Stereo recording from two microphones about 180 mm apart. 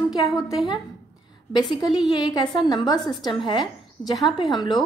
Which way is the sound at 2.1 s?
25° left (ahead or behind).